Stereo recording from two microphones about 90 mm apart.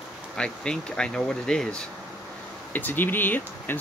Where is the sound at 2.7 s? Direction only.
20° left (ahead or behind).